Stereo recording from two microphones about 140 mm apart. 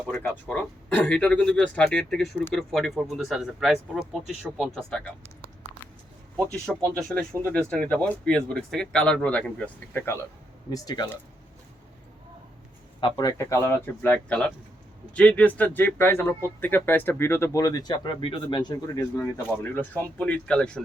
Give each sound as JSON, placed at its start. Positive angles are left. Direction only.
{"t": 0.3, "sound": "speech", "side_deg": 5}
{"t": 6.3, "sound": "speech", "side_deg": 10}
{"t": 9.9, "sound": "speech", "side_deg": 20}
{"t": 10.7, "sound": "speech", "side_deg": 30}
{"t": 13.0, "sound": "a man's voice", "side_deg": 35}
{"t": 13.2, "sound": "speech", "side_deg": 20}
{"t": 19.6, "sound": "speech", "side_deg": 15}